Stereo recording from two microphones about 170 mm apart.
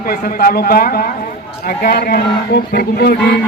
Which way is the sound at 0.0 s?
60° left (ahead or behind).